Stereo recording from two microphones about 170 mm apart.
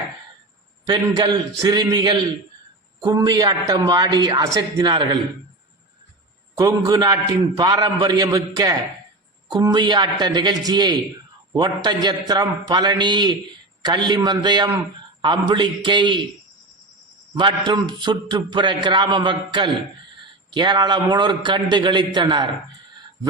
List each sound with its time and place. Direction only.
0.9 s a man's voice: 25° right (ahead or behind)
6.6 s a man's voice: 20° right (ahead or behind)
17.3 s a man's voice: 30° right (ahead or behind)